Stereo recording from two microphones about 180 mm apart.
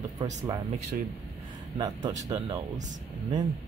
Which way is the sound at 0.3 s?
40° right (ahead or behind).